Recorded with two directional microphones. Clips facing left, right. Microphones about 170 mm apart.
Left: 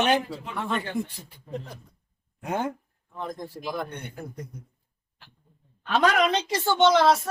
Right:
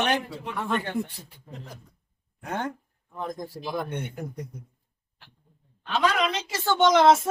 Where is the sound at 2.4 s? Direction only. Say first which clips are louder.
Left 3 dB; 10° left (ahead or behind).